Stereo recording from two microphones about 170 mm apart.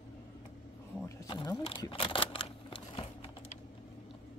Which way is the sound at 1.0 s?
25° left (ahead or behind).